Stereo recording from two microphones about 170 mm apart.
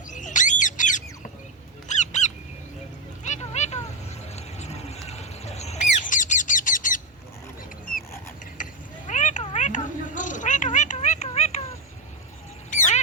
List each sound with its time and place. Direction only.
0.1 s squawk: 45° left (ahead or behind)
1.9 s bird: 45° left (ahead or behind)
3.2 s a sound: 40° left (ahead or behind)
8.6 s cat: 50° left (ahead or behind)
12.7 s quack: 45° left (ahead or behind)